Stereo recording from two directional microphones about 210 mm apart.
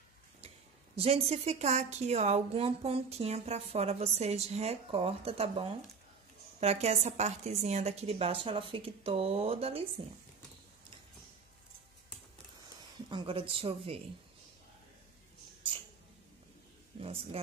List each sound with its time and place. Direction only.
0.9 s a woman's voice: 30° right (ahead or behind)
13.1 s a woman's voice: 25° right (ahead or behind)
17.0 s a woman's voice: 25° right (ahead or behind)